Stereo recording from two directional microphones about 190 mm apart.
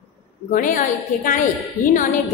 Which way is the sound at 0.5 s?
45° left (ahead or behind).